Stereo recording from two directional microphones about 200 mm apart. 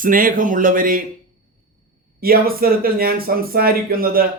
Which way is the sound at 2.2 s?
45° right (ahead or behind).